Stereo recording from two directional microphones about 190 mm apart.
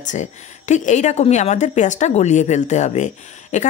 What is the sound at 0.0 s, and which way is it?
A woman's voice, 40° left (ahead or behind).